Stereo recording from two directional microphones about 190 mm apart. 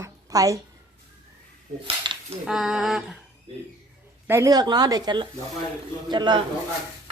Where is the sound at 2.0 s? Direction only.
25° right (ahead or behind).